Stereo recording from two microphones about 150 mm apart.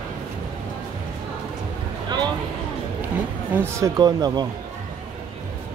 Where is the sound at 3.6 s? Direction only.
20° right (ahead or behind).